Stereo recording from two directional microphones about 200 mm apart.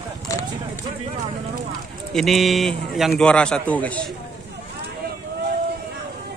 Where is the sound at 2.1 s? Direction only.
Centre (ahead or behind).